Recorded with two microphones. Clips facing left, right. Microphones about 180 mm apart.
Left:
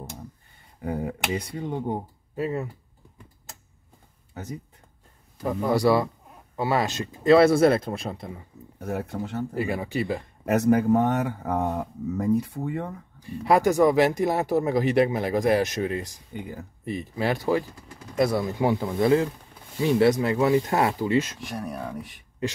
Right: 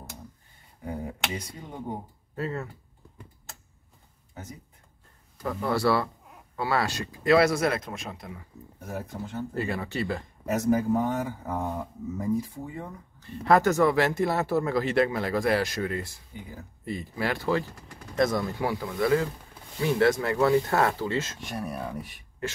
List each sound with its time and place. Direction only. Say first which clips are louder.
2.3 s speech: left 4 dB; 15° left (ahead or behind)
4.3 s a sound: left 7 dB; 70° left (ahead or behind)
5.4 s speech: left 4 dB; 15° left (ahead or behind); by 8.5 s 30° left (ahead or behind)
8.7 s speech: left 6 dB; 65° left (ahead or behind)
9.5 s speech: left 3 dB; 15° left (ahead or behind)
10.4 s speech: left 4 dB; 65° left (ahead or behind)
13.2 s speech: left 1 dB; 10° left (ahead or behind)
21.4 s speech: left 1 dB; centre (ahead or behind)